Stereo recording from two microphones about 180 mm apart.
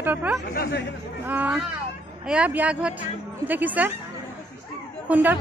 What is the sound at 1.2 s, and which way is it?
Speech, 10° right (ahead or behind).